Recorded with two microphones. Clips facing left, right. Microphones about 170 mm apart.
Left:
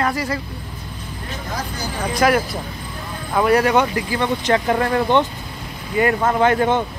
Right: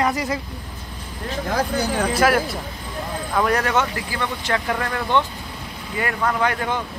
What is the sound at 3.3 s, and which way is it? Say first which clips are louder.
Speech: left 5 dB; 10° left (ahead or behind).